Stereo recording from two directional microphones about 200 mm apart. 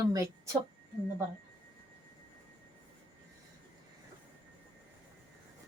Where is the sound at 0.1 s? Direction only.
15° right (ahead or behind).